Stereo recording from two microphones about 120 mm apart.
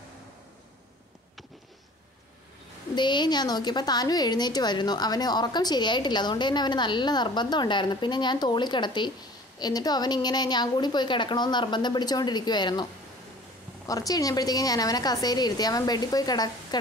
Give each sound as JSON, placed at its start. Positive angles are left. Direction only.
{"t": 3.0, "sound": "a woman's voice", "side_deg": 40}
{"t": 13.8, "sound": "a woman's voice", "side_deg": 30}